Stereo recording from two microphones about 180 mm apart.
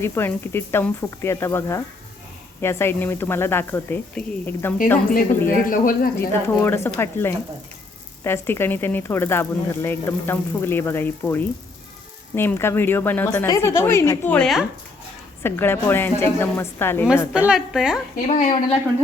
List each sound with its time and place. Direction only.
0.0 s speech: 10° left (ahead or behind)
5.7 s speech: 50° left (ahead or behind)
6.1 s speech: 15° left (ahead or behind)
17.3 s a woman's voice: 5° right (ahead or behind)
18.3 s speech: 40° left (ahead or behind)